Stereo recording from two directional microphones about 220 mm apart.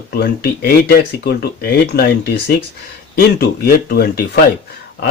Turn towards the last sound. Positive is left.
turn(degrees=45)  # may be behind; listen again after turning